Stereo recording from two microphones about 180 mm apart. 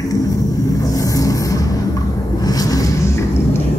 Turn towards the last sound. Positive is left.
turn(degrees=20)  # may be behind; listen again after turning